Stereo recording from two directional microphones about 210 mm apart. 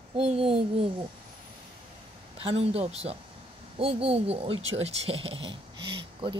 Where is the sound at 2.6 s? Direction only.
30° right (ahead or behind).